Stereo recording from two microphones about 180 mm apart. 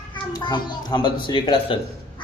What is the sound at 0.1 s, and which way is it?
A child's voice, 25° left (ahead or behind).